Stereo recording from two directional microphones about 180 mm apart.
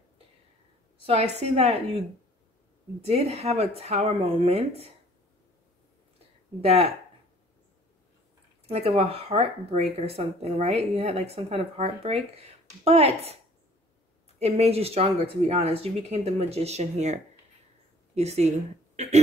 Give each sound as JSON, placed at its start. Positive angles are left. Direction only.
{"t": 1.0, "sound": "speech", "side_deg": -35}
{"t": 3.0, "sound": "speech", "side_deg": -35}
{"t": 6.6, "sound": "speech", "side_deg": -35}
{"t": 8.6, "sound": "speech", "side_deg": -35}
{"t": 14.4, "sound": "speech", "side_deg": -35}
{"t": 19.0, "sound": "a sound", "side_deg": -40}